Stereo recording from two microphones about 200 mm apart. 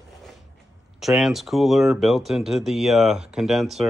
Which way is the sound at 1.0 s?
Centre (ahead or behind).